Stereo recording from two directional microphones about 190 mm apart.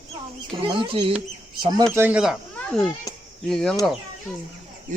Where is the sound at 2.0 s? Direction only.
5° right (ahead or behind).